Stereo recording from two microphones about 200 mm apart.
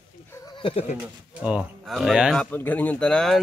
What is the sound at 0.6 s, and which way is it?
Speech, 30° left (ahead or behind).